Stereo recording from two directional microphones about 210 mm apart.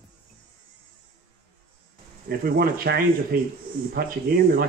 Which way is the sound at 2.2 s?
45° right (ahead or behind).